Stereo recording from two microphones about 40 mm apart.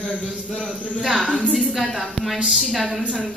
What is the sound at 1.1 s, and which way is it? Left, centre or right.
Speech, left.